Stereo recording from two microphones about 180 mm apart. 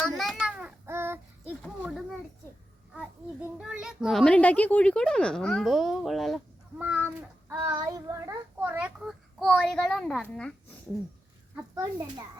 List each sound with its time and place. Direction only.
0.2 s child singing: centre (ahead or behind)
1.8 s a sound: centre (ahead or behind)
3.6 s a child's voice: 5° right (ahead or behind)
11.7 s a child's voice: 20° right (ahead or behind)